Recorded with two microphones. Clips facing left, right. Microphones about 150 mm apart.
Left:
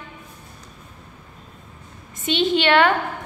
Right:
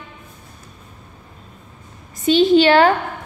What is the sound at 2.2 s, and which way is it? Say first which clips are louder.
Speech: right 8 dB; 35° right (ahead or behind).